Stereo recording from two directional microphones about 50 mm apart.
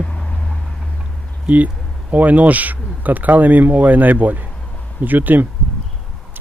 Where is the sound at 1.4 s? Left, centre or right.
Right.